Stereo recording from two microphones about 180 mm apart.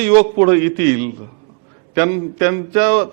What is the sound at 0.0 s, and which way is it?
Speech, 20° right (ahead or behind).